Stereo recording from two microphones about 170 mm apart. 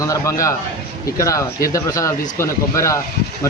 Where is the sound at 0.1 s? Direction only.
20° left (ahead or behind).